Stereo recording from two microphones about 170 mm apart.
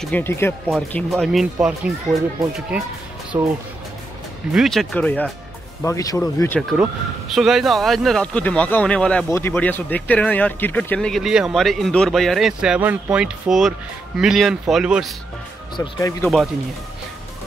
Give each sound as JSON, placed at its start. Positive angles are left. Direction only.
{"t": 0.0, "sound": "speech", "side_deg": 10}
{"t": 0.9, "sound": "speech", "side_deg": 0}
{"t": 3.3, "sound": "speech", "side_deg": -20}
{"t": 4.5, "sound": "speech", "side_deg": 0}
{"t": 5.8, "sound": "speech", "side_deg": 20}
{"t": 6.8, "sound": "speech", "side_deg": 0}
{"t": 15.7, "sound": "speech", "side_deg": 20}